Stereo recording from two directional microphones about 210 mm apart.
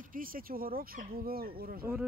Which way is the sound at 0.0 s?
40° right (ahead or behind).